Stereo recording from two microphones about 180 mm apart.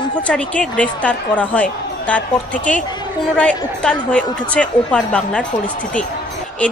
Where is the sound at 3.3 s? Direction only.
5° left (ahead or behind).